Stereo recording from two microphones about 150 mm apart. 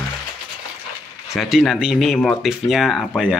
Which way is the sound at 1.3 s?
Centre (ahead or behind).